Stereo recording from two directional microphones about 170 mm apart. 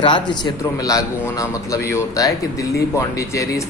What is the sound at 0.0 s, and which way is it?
Speech, 30° left (ahead or behind).